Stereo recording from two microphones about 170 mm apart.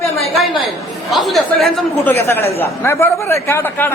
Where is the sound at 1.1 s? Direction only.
Centre (ahead or behind).